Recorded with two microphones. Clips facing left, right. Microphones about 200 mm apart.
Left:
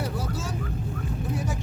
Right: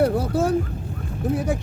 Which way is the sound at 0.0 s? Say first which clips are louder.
Right 12 dB; 55° right (ahead or behind).